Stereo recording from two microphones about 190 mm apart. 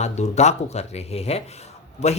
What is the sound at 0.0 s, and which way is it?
Speech, 35° left (ahead or behind).